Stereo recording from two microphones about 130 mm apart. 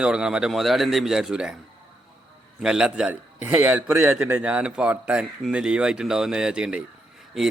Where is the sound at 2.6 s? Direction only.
5° right (ahead or behind).